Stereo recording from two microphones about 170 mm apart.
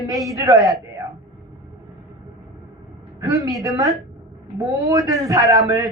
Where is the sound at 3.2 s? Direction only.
20° right (ahead or behind).